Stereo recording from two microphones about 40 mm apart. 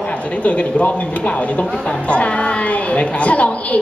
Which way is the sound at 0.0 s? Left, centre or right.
Left.